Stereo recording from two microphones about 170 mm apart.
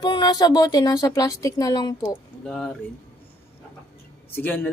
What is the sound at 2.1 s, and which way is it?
Speech, centre (ahead or behind).